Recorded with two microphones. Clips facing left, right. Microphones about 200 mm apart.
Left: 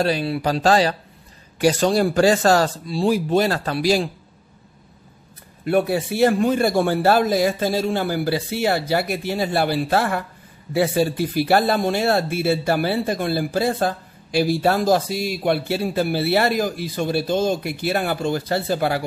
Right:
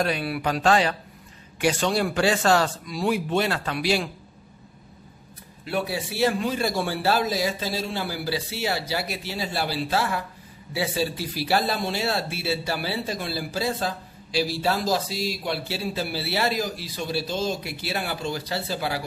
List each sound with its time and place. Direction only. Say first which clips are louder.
0.0 s speech: left 5 dB; 30° left (ahead or behind)
5.7 s a man's voice: left 8 dB; 50° left (ahead or behind)